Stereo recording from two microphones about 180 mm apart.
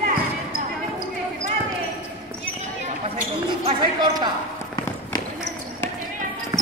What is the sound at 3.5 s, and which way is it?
Basketball bounce, 25° right (ahead or behind).